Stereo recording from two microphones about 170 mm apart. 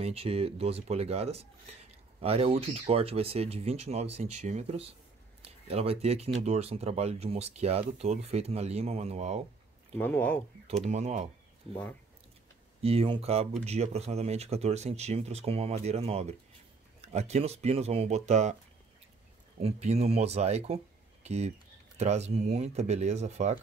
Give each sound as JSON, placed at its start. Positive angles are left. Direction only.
{"t": 0.0, "sound": "speech", "side_deg": -35}
{"t": 9.9, "sound": "speech", "side_deg": 10}
{"t": 10.8, "sound": "speech", "side_deg": -40}
{"t": 12.8, "sound": "speech", "side_deg": -35}
{"t": 19.6, "sound": "speech", "side_deg": -40}